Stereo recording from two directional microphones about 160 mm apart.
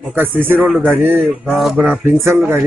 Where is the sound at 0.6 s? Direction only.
Centre (ahead or behind).